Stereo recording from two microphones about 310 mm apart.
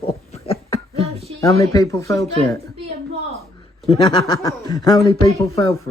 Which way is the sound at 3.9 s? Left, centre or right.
Centre.